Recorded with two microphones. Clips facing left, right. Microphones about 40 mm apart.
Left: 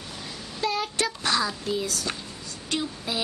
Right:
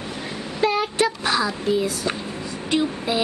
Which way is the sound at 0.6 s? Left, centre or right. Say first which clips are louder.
Right 7 dB; right.